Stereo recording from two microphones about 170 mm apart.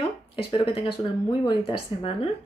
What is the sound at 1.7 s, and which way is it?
Speech, 35° left (ahead or behind).